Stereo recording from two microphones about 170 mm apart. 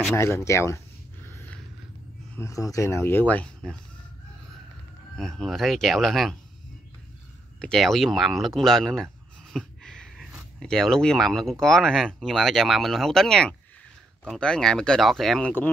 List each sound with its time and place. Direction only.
0.1 s speech: 15° left (ahead or behind)
1.2 s a sound: 15° left (ahead or behind)
2.3 s speech: 20° left (ahead or behind)
5.1 s speech: 5° left (ahead or behind)
7.6 s speech: centre (ahead or behind)